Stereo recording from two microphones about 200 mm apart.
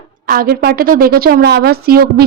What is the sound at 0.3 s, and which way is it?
A woman's voice, 50° right (ahead or behind).